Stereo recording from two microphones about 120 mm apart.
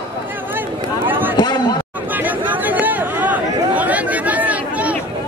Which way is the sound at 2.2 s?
15° right (ahead or behind).